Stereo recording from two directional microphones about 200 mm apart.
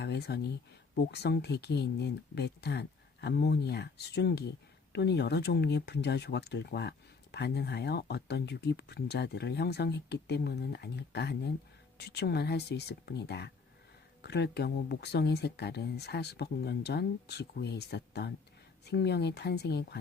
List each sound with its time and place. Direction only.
0.0 s speech: 55° left (ahead or behind)